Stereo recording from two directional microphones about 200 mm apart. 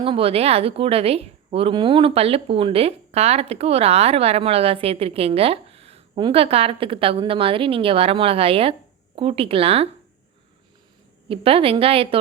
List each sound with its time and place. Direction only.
0.0 s a woman's voice: 30° right (ahead or behind)
11.3 s a woman's voice: 30° right (ahead or behind)